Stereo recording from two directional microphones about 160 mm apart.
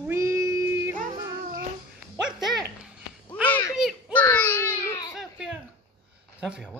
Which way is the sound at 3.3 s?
10° left (ahead or behind).